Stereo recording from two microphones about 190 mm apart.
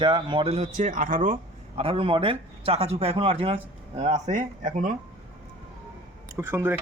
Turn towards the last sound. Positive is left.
turn(degrees=-10)  # may be behind; listen again after turning